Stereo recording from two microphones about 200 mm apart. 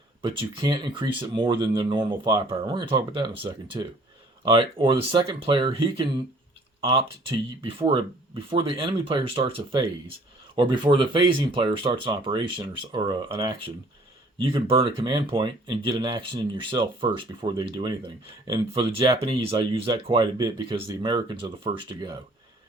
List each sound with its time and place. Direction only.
0.2 s speech: 25° right (ahead or behind)